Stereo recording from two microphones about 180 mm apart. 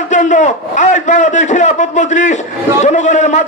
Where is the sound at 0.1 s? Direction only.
40° left (ahead or behind).